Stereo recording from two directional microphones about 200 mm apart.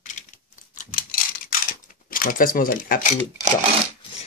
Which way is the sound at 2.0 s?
45° left (ahead or behind).